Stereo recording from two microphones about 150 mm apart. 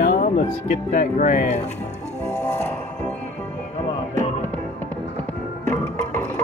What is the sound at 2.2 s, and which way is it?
Music, 15° left (ahead or behind).